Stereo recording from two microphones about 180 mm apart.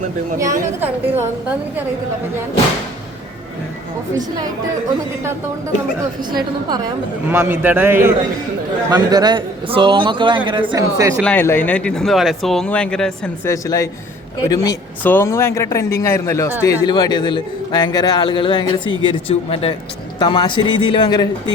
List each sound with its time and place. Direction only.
0.3 s a woman's voice: 15° right (ahead or behind)
7.3 s a woman's voice: 10° right (ahead or behind)
8.9 s a man's voice: 20° right (ahead or behind)
11.2 s speech: 10° left (ahead or behind)
13.5 s a man's voice: 20° left (ahead or behind)